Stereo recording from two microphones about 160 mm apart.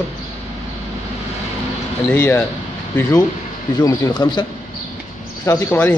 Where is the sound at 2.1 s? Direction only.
10° left (ahead or behind).